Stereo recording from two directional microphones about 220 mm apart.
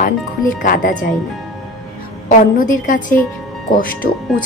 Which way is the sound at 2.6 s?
35° left (ahead or behind).